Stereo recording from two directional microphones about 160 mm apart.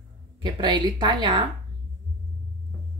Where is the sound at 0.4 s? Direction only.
30° right (ahead or behind).